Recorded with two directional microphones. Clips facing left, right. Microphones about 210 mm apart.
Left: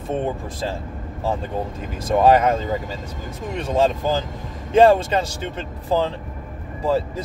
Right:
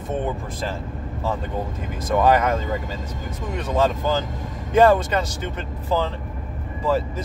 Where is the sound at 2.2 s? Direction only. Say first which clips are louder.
Left 4 dB; 30° left (ahead or behind).